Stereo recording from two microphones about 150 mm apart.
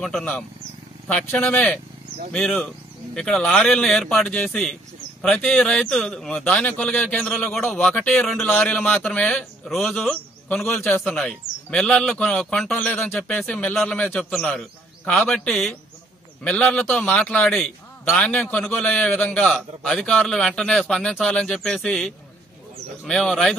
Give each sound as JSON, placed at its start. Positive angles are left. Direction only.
{"t": 0.0, "sound": "a man's voice", "side_deg": 5}